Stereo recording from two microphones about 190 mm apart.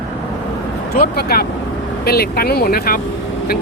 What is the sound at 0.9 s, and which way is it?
Speech, 55° left (ahead or behind).